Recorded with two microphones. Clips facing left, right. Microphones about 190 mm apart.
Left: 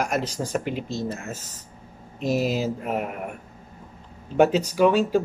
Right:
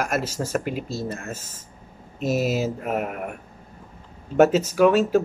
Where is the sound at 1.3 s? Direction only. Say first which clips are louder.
Right 1 dB; 20° left (ahead or behind).